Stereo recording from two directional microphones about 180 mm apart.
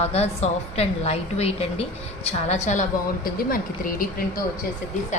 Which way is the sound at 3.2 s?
50° left (ahead or behind).